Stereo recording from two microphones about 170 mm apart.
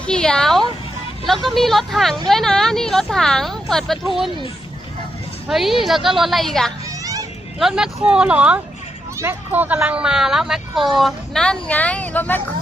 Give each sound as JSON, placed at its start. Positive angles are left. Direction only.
{"t": 0.0, "sound": "speech", "side_deg": 5}
{"t": 5.5, "sound": "speech", "side_deg": 0}
{"t": 7.0, "sound": "children playing", "side_deg": -20}
{"t": 7.6, "sound": "speech", "side_deg": -5}